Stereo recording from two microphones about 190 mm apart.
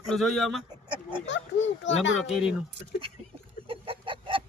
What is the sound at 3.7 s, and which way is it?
Chicken, 30° right (ahead or behind).